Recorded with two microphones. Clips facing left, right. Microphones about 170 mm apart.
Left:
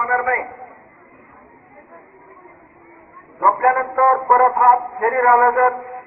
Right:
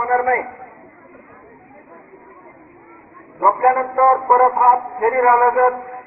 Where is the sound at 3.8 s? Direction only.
Centre (ahead or behind).